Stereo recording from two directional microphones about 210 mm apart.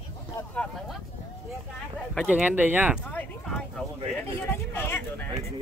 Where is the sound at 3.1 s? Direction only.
10° left (ahead or behind).